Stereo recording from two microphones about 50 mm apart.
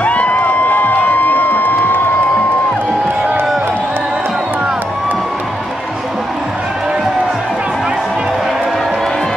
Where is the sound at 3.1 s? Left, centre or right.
Right.